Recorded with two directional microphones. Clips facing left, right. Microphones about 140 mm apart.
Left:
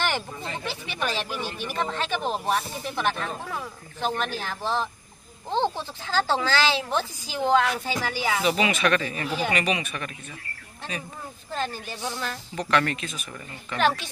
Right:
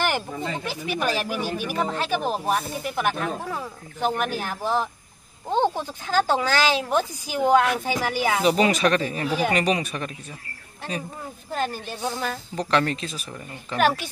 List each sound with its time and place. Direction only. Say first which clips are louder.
0.7 s speech: right 3 dB; 10° right (ahead or behind)
8.2 s speech: right 4 dB; 45° right (ahead or behind)
11.5 s speech: right 3 dB; 10° right (ahead or behind)
12.5 s speech: right 1 dB; 35° right (ahead or behind)
13.7 s speech: right 2 dB; 10° right (ahead or behind)